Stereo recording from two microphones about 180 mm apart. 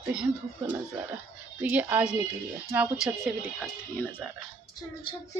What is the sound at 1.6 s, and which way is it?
Speech, 10° right (ahead or behind).